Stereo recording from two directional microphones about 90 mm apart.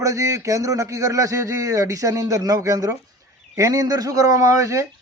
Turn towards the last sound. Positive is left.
turn(degrees=-35)  # may be behind; listen again after turning